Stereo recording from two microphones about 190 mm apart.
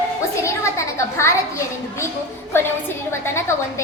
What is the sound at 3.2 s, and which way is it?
Speech, 15° left (ahead or behind).